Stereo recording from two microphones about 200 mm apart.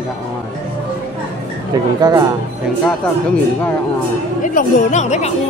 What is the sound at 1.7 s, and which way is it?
Speech, 20° right (ahead or behind).